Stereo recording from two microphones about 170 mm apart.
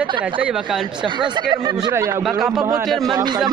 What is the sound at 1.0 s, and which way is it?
A man's voice, 25° right (ahead or behind).